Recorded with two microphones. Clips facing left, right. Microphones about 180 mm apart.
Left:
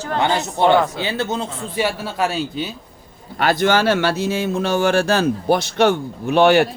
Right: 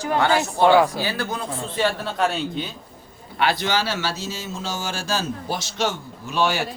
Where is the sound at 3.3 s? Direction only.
45° left (ahead or behind).